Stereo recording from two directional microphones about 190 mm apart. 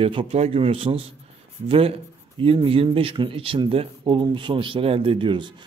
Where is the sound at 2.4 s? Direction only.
30° right (ahead or behind).